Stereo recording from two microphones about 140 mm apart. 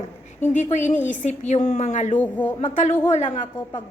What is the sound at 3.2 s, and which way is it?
Speech, 60° left (ahead or behind).